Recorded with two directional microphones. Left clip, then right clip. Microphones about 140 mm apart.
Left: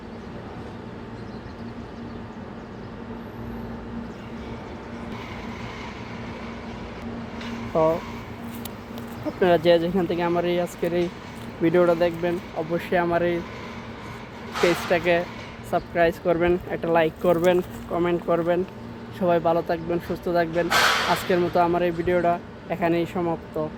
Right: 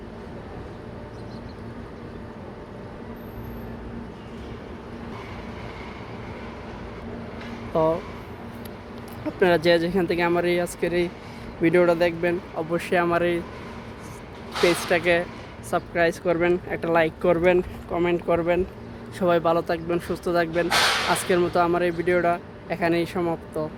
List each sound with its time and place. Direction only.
7.7 s speech: 25° right (ahead or behind)
9.6 s speech: 25° right (ahead or behind)
11.6 s speech: 35° right (ahead or behind)
14.5 s a sound: 25° left (ahead or behind)
14.8 s speech: 20° right (ahead or behind)
20.7 s a sound: 30° left (ahead or behind)
21.2 s speech: 15° right (ahead or behind)